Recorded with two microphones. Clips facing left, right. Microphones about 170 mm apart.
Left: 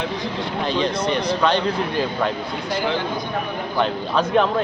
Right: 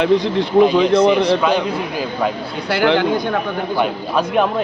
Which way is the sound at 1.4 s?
10° right (ahead or behind).